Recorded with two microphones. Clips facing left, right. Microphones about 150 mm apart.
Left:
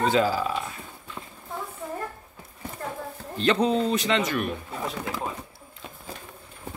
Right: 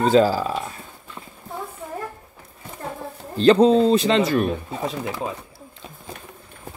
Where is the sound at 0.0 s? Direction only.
35° right (ahead or behind).